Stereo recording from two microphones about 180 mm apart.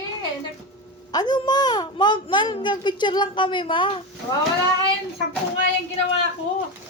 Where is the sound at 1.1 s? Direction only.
20° left (ahead or behind).